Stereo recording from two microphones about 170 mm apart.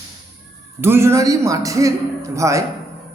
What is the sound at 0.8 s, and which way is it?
A man's voice, 15° right (ahead or behind).